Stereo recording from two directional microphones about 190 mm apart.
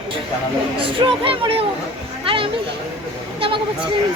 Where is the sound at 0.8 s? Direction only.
25° right (ahead or behind).